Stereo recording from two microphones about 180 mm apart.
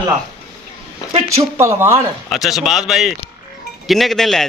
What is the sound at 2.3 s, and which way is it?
Speech, centre (ahead or behind).